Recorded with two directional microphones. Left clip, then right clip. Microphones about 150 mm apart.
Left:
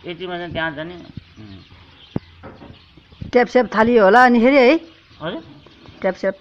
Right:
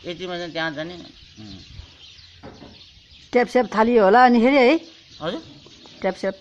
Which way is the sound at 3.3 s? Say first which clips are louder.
Left 4 dB; 30° right (ahead or behind).